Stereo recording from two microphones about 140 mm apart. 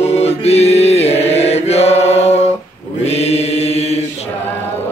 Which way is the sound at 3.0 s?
50° left (ahead or behind).